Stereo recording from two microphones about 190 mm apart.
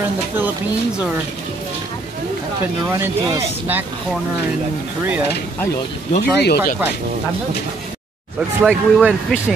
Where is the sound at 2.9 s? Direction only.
15° right (ahead or behind).